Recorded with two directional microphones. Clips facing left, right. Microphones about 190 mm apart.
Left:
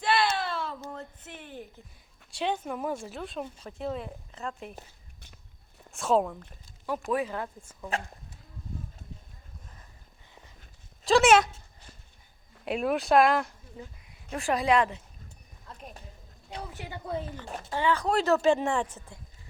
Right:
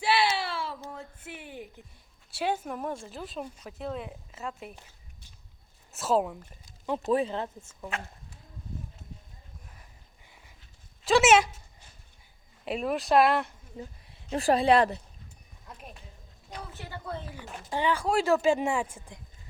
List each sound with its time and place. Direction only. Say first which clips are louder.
0.0 s a sound: even; 5° right (ahead or behind)
2.3 s speech: even; 5° right (ahead or behind)
5.9 s speech: left 1 dB; 5° right (ahead or behind)
6.8 s speech: right 3 dB; 25° right (ahead or behind)
11.0 s dog: left 1 dB; 5° right (ahead or behind)
12.6 s speech: left 2 dB; centre (ahead or behind)
13.7 s speech: right 3 dB; 30° right (ahead or behind)
16.7 s a woman's voice: left 2 dB; 15° left (ahead or behind)
17.7 s speech: even; 15° right (ahead or behind)